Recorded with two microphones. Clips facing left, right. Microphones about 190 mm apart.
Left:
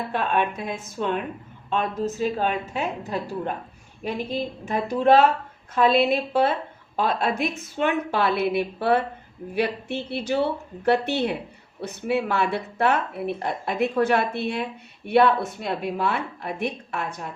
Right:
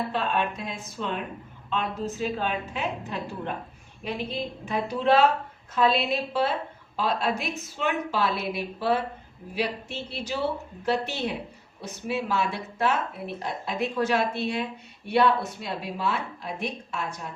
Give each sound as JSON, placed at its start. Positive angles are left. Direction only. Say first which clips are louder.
{"t": 0.1, "sound": "a woman's voice", "louder": "left 3 dB", "side_deg": 55}